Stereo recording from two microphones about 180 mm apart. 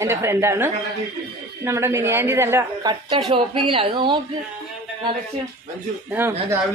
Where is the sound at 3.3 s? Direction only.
30° right (ahead or behind).